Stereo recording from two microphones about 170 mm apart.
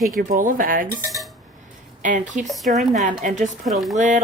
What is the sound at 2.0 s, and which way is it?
Speech, 50° right (ahead or behind).